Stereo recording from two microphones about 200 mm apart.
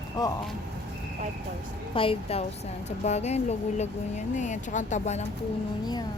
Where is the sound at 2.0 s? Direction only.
25° left (ahead or behind).